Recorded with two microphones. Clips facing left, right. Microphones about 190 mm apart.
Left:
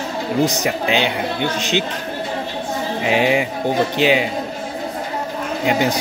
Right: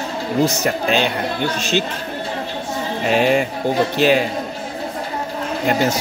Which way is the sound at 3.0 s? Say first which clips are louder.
Right 1 dB; 10° left (ahead or behind).